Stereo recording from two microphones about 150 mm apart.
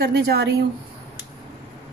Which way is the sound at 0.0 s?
90° right.